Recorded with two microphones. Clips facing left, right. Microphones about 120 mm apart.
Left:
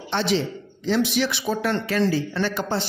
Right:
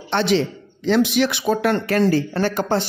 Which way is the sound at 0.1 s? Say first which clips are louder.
Right 4 dB; 65° right (ahead or behind).